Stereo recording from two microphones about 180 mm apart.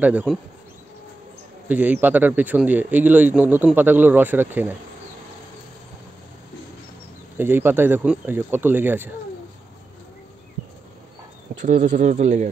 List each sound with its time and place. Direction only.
0.0 s speech: 10° right (ahead or behind)
1.7 s speech: 10° right (ahead or behind)
7.3 s speech: 10° right (ahead or behind)
11.6 s speech: 40° right (ahead or behind)